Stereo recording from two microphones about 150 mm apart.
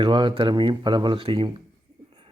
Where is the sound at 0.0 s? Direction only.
30° right (ahead or behind).